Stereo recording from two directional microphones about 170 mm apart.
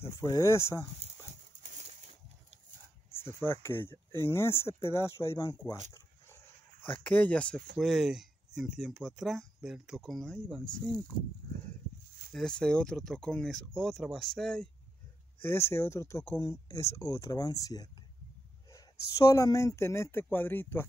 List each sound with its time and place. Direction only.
0.0 s speech: 20° left (ahead or behind)
1.6 s a sound: 45° right (ahead or behind)
3.1 s a sound: 15° left (ahead or behind)
3.6 s speech: 15° left (ahead or behind)
6.8 s speech: 10° left (ahead or behind)
12.3 s speech: 5° left (ahead or behind)
15.4 s speech: 15° left (ahead or behind)